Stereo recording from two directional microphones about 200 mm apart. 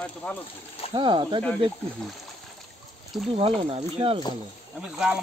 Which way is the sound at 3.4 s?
30° right (ahead or behind).